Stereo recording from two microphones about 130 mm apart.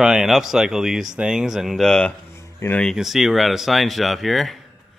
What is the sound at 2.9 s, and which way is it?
Speech, centre (ahead or behind).